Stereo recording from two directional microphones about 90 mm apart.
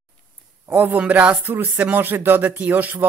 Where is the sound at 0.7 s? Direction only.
20° right (ahead or behind).